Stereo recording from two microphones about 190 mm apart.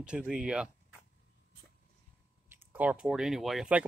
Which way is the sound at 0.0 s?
5° right (ahead or behind).